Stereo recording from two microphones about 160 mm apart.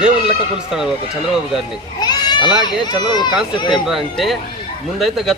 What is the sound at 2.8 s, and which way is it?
Speech, 30° left (ahead or behind).